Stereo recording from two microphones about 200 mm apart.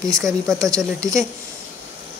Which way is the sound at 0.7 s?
15° right (ahead or behind).